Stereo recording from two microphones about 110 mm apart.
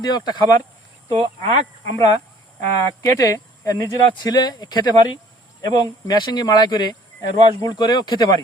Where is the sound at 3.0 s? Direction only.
30° left (ahead or behind).